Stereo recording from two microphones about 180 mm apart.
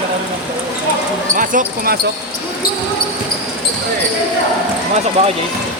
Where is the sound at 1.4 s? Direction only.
50° right (ahead or behind).